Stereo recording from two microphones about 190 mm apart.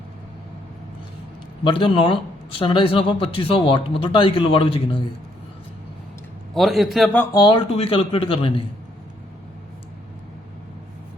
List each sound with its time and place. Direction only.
1.6 s a man's voice: 25° left (ahead or behind)
6.5 s a man's voice: centre (ahead or behind)
7.3 s a man's voice: 25° left (ahead or behind)